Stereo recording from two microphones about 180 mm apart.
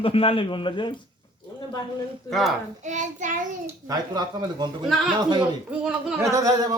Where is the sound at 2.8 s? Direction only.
40° right (ahead or behind).